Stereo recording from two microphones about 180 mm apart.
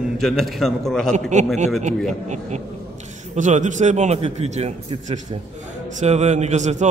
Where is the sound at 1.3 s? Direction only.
40° right (ahead or behind).